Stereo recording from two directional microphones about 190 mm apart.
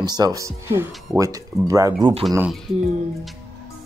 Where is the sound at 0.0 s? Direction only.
20° right (ahead or behind).